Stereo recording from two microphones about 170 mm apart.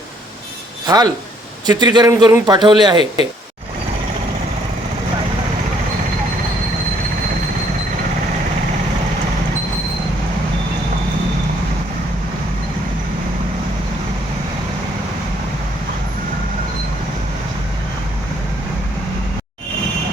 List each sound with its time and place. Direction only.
0.9 s a man's voice: 25° right (ahead or behind)